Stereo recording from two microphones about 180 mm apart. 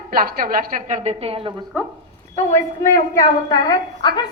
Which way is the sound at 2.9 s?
20° left (ahead or behind).